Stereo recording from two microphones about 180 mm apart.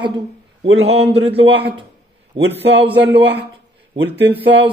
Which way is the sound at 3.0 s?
70° right (ahead or behind).